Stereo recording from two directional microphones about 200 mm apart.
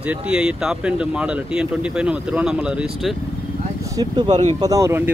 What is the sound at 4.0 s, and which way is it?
Speech, 20° right (ahead or behind).